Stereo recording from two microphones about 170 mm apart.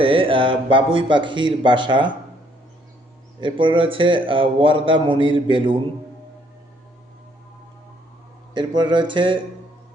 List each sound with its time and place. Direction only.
0.0 s a man's voice: 30° right (ahead or behind)
3.4 s a man's voice: 30° right (ahead or behind)
8.5 s a man's voice: 25° right (ahead or behind)